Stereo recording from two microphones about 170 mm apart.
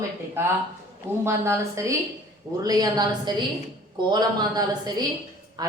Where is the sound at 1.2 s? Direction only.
15° right (ahead or behind).